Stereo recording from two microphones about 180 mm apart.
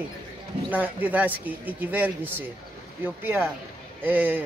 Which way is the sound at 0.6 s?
10° right (ahead or behind).